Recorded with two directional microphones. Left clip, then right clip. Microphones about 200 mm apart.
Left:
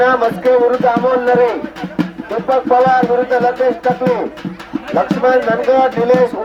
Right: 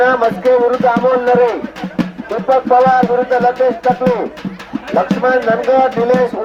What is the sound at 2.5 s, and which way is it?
Speech, 15° left (ahead or behind).